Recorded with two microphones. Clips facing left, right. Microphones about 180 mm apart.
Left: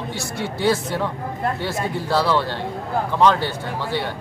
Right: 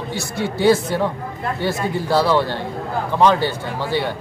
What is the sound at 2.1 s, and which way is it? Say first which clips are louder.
A man's voice: right 3 dB; 10° right (ahead or behind).